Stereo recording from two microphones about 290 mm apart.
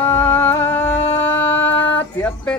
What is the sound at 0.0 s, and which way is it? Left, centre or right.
Music, centre.